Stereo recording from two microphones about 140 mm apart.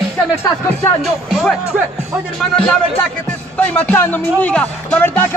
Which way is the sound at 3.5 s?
10° left (ahead or behind).